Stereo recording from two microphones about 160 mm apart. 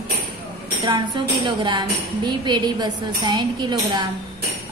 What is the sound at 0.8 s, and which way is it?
Speech, 30° right (ahead or behind).